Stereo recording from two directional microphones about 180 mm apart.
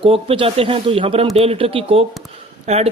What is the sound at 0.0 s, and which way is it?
Speech, 30° right (ahead or behind).